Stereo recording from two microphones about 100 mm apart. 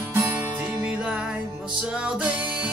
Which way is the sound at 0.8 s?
10° right (ahead or behind).